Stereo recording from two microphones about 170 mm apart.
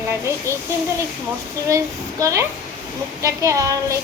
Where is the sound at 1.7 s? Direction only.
20° right (ahead or behind).